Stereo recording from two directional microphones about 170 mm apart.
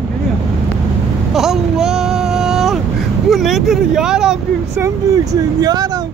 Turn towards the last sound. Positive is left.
turn(degrees=-20)  # may be behind; listen again after turning